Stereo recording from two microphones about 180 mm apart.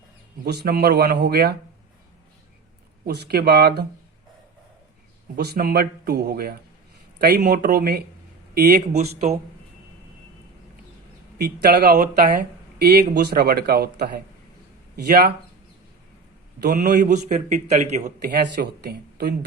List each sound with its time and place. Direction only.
0.4 s speech: 60° right (ahead or behind)
3.1 s speech: 60° right (ahead or behind)
5.4 s speech: 60° right (ahead or behind)
8.9 s a man's voice: 35° right (ahead or behind)
11.3 s speech: 65° right (ahead or behind)
12.9 s speech: 65° right (ahead or behind)
16.8 s a man's voice: 50° right (ahead or behind)
18.2 s speech: 60° right (ahead or behind)